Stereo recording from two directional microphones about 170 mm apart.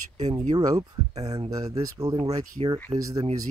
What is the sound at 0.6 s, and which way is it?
Speech, 20° right (ahead or behind).